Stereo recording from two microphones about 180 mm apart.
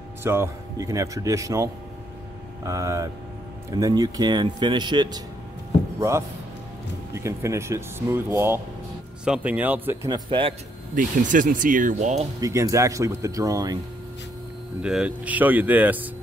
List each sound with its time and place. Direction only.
0.2 s speech: 15° right (ahead or behind)
7.2 s speech: 15° right (ahead or behind)
10.1 s speech: 30° right (ahead or behind)
11.0 s speech: 45° right (ahead or behind)
12.4 s speech: 20° right (ahead or behind)
14.8 s speech: 5° right (ahead or behind)